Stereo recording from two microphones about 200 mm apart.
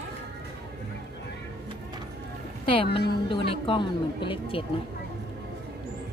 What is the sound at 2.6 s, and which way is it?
Speech, 25° left (ahead or behind).